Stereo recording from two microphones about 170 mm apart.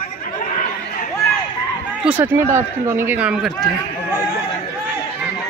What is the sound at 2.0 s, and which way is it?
Speech, 10° right (ahead or behind).